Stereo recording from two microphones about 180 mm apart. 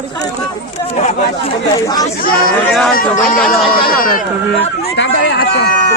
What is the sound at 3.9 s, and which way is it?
Speech, 55° left (ahead or behind).